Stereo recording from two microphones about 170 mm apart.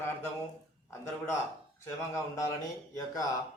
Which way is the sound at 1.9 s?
20° left (ahead or behind).